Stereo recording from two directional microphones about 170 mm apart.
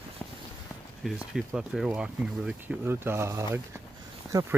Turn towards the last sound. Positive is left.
turn(degrees=-20)  # may be behind; listen again after turning